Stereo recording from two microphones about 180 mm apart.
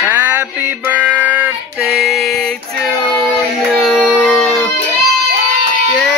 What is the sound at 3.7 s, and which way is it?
Music, 5° left (ahead or behind).